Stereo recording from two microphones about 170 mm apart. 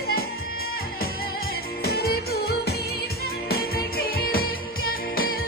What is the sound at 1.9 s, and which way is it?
Music, 65° left (ahead or behind).